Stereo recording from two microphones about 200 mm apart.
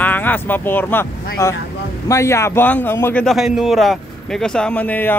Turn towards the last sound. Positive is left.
turn(degrees=10)  # may be behind; listen again after turning